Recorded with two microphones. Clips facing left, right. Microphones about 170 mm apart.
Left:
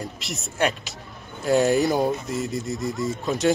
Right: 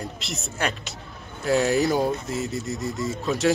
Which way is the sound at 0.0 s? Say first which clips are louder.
Even; centre (ahead or behind).